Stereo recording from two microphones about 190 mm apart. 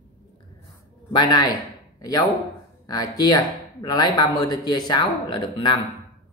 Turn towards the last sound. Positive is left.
turn(degrees=25)  # may be behind; listen again after turning